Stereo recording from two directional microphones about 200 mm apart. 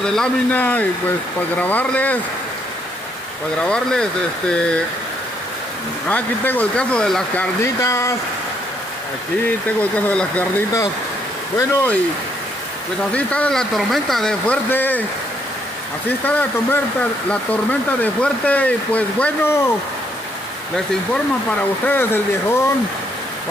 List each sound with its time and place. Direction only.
0.0 s speech: 5° left (ahead or behind)
3.6 s speech: 5° left (ahead or behind)
6.0 s speech: 10° left (ahead or behind)
7.6 s speech: 15° left (ahead or behind)
9.7 s speech: 5° left (ahead or behind)
13.1 s speech: 5° left (ahead or behind)
16.3 s speech: 5° left (ahead or behind)
20.7 s speech: 5° left (ahead or behind)